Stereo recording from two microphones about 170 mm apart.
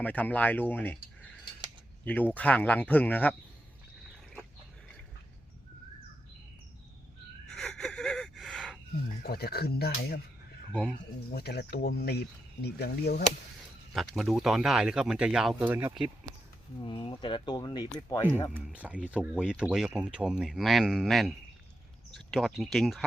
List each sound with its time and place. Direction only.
0.0 s speech: 10° left (ahead or behind)
2.0 s speech: 10° left (ahead or behind)
7.4 s gasp: 5° left (ahead or behind)
9.2 s speech: 70° left (ahead or behind)
11.3 s speech: 70° left (ahead or behind)
13.9 s speech: centre (ahead or behind)
16.8 s speech: 30° left (ahead or behind)
18.5 s speech: 10° right (ahead or behind)